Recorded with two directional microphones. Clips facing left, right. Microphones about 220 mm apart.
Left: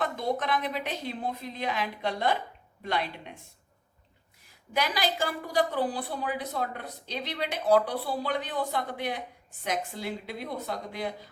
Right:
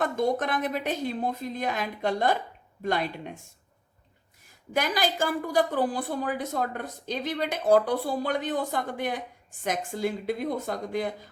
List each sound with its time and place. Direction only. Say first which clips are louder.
0.0 s a woman's voice: right 4 dB; 45° right (ahead or behind)
4.7 s a woman's voice: right 2 dB; 45° right (ahead or behind)